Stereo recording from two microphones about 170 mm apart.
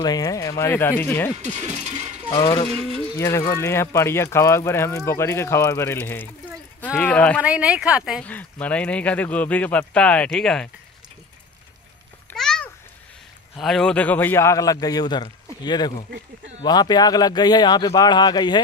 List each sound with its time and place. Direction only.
0.0 s speech: 25° left (ahead or behind)
1.4 s mechanisms: 40° right (ahead or behind)
2.3 s speech: 15° left (ahead or behind)
7.4 s speech: 5° right (ahead or behind)
8.2 s speech: 10° left (ahead or behind)
12.3 s a sound: 5° left (ahead or behind)
13.6 s a man's voice: centre (ahead or behind); by 18.6 s 25° left (ahead or behind)